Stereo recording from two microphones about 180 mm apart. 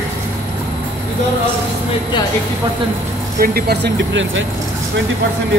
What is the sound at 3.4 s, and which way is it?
Speech, 60° right (ahead or behind).